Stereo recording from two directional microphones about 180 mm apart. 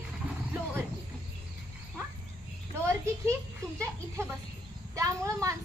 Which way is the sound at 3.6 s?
20° right (ahead or behind).